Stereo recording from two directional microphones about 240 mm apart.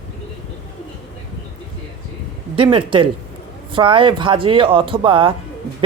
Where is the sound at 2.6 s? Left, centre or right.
Right.